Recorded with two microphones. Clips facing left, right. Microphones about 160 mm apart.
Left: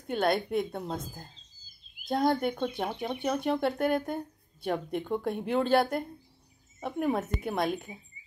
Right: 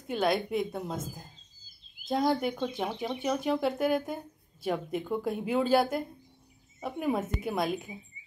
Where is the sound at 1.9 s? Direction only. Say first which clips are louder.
Left 6 dB; 55° left (ahead or behind).